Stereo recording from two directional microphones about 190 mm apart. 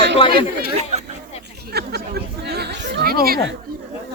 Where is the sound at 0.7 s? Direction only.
35° right (ahead or behind).